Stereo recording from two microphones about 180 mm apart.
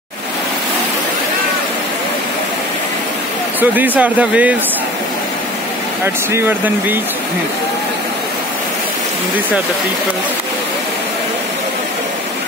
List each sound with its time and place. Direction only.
3.7 s speech: 10° right (ahead or behind)
6.0 s speech: 10° right (ahead or behind)